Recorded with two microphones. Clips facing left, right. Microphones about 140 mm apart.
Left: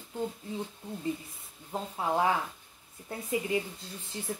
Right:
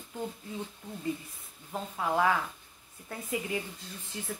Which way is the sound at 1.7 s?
25° left (ahead or behind).